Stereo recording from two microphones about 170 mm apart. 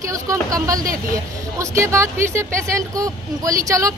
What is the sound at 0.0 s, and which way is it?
A woman's voice, 20° right (ahead or behind).